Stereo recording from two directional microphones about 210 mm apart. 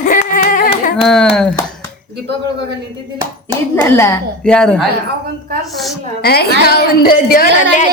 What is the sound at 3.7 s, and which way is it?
Speech, 10° left (ahead or behind).